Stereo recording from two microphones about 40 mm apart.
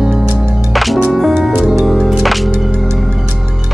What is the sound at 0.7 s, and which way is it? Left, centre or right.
Music, centre.